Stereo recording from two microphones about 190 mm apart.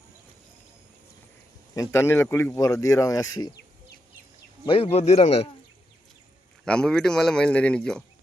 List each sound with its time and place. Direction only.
1.7 s speech: 15° left (ahead or behind)
4.6 s a man's voice: 30° left (ahead or behind)
6.7 s speech: 5° left (ahead or behind)